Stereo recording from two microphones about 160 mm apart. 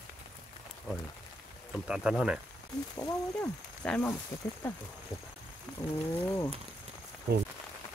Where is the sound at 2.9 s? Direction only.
20° left (ahead or behind).